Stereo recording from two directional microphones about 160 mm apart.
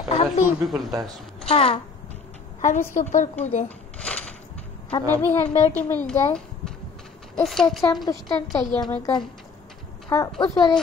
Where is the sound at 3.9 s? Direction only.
10° left (ahead or behind).